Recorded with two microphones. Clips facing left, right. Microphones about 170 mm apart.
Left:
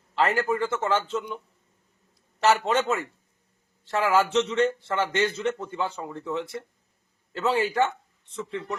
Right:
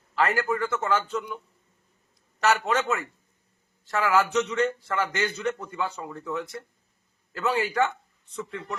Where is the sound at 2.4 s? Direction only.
30° left (ahead or behind).